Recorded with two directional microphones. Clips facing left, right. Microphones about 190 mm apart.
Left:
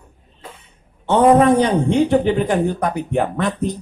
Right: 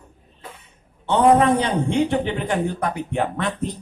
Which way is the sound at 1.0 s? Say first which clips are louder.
Left 3 dB; 45° left (ahead or behind).